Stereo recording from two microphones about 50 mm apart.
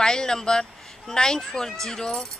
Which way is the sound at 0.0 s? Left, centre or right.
Centre.